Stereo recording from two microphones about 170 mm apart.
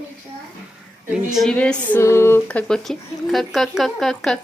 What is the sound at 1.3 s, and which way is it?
Speech, 5° left (ahead or behind).